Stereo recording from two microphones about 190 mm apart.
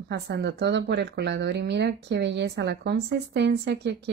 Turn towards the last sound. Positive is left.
turn(degrees=-65)  # may be behind; listen again after turning